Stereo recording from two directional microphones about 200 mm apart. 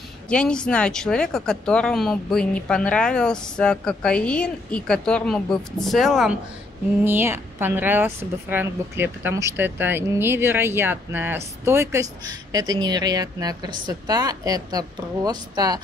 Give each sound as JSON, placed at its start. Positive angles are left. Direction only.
{"t": 0.3, "sound": "a woman's voice", "side_deg": 5}